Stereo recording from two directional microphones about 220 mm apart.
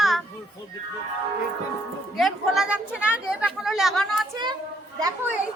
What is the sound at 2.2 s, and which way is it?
A woman's voice, centre (ahead or behind).